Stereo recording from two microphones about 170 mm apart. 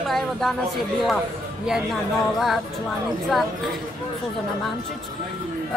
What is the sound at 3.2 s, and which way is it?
Speech, centre (ahead or behind).